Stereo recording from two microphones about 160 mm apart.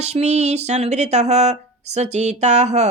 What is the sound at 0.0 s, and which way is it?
Speech, 45° right (ahead or behind).